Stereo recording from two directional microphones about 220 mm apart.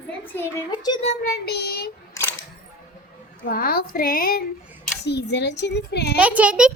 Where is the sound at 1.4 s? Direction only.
45° left (ahead or behind).